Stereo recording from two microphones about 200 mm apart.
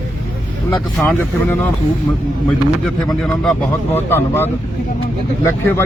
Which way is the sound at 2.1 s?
20° left (ahead or behind).